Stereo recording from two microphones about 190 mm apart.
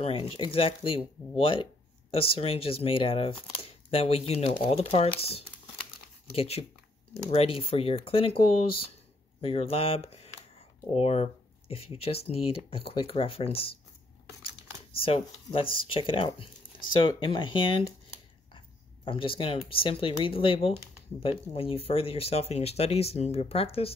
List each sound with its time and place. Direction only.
0.0 s speech: 30° left (ahead or behind)
6.3 s speech: 30° left (ahead or behind)
9.4 s speech: 30° left (ahead or behind)
15.0 s speech: 30° left (ahead or behind)